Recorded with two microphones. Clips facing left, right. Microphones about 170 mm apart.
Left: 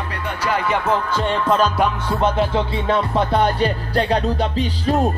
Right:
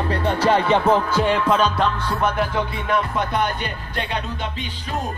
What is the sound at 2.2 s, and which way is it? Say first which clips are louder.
Music: left 4 dB; 25° left (ahead or behind).